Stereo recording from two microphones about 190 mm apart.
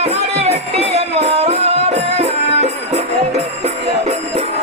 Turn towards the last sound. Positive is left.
turn(degrees=-35)  # may be behind; listen again after turning